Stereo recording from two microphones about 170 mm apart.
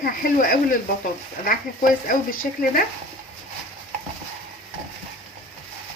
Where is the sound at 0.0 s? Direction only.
55° left (ahead or behind).